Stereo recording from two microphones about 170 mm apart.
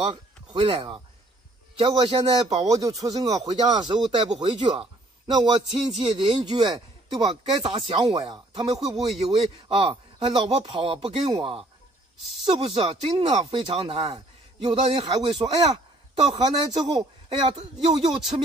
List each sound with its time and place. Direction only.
0.0 s speech: 30° right (ahead or behind)
2.7 s a man's voice: 20° right (ahead or behind)
17.3 s speech: 35° right (ahead or behind)